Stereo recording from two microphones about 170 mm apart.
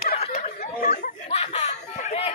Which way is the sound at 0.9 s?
40° left (ahead or behind).